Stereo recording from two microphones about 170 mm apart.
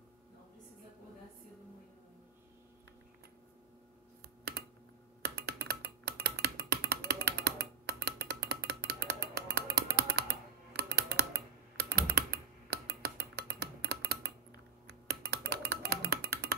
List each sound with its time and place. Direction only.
5.2 s music: 75° right (ahead or behind)
9.9 s computer keyboard: 70° right (ahead or behind)
14.9 s music: 75° right (ahead or behind)